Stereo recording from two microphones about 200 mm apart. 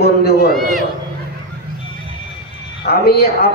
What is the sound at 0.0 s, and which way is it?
Run, 50° left (ahead or behind).